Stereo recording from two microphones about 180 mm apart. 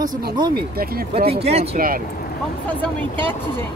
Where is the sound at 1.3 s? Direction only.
35° right (ahead or behind).